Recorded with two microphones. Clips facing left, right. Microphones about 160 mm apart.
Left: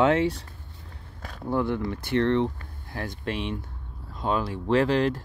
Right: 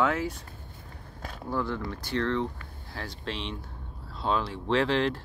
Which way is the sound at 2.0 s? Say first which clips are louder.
Left 6 dB; 60° left (ahead or behind).